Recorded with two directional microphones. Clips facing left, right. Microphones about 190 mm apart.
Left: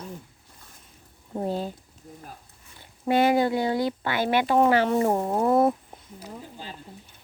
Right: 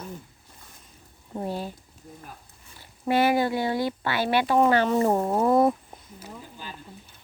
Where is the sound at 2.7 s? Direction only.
20° left (ahead or behind).